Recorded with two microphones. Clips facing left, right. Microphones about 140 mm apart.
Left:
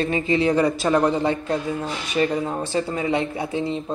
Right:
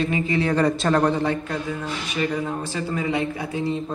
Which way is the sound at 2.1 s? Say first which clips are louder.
Left 4 dB; 30° left (ahead or behind).